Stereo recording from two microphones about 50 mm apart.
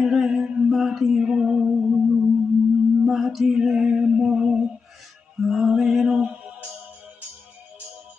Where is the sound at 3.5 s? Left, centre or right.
Centre.